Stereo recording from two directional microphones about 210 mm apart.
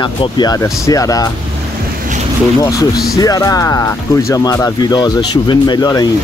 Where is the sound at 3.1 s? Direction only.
15° left (ahead or behind).